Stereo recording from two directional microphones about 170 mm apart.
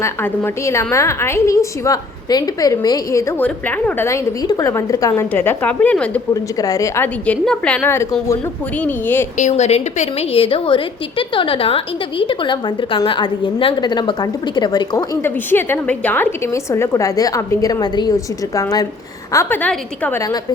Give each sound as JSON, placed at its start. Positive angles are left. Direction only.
{"t": 0.0, "sound": "a woman's voice", "side_deg": 15}
{"t": 6.3, "sound": "a woman's voice", "side_deg": 20}
{"t": 9.4, "sound": "a woman's voice", "side_deg": 40}